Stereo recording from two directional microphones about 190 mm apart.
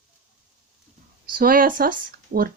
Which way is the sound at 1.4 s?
50° right (ahead or behind).